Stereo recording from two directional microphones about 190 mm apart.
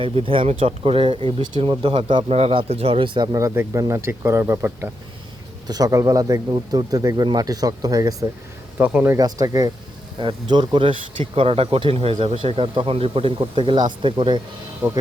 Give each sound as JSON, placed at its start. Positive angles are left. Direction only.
{"t": 0.0, "sound": "speech", "side_deg": -25}
{"t": 8.8, "sound": "speech", "side_deg": -10}
{"t": 9.1, "sound": "speech", "side_deg": -20}
{"t": 14.8, "sound": "speech", "side_deg": -10}